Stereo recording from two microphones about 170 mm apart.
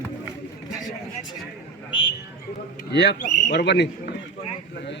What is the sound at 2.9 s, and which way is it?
Speech, 85° left.